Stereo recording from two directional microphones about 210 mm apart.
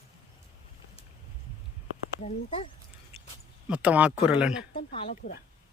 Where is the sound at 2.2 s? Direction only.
25° left (ahead or behind).